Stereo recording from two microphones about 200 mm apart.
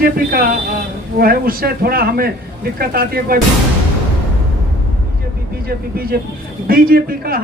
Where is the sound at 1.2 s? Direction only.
45° right (ahead or behind).